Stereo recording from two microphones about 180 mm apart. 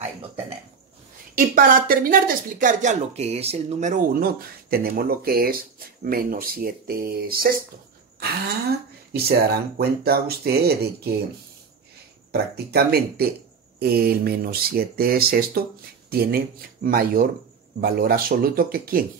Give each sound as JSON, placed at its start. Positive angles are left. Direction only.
{"t": 1.3, "sound": "speech", "side_deg": -50}
{"t": 12.3, "sound": "speech", "side_deg": -60}